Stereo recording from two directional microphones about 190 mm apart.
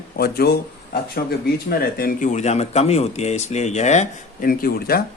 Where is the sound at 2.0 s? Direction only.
45° left (ahead or behind).